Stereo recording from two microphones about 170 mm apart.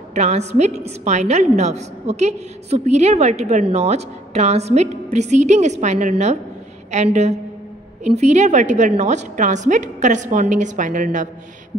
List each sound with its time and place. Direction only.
0.1 s a woman's voice: 40° right (ahead or behind)